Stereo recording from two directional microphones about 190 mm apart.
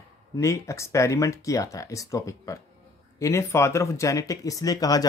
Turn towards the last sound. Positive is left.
turn(degrees=20)  # may be behind; listen again after turning